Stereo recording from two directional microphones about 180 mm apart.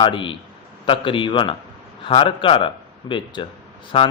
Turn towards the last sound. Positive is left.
turn(degrees=30)  # may be behind; listen again after turning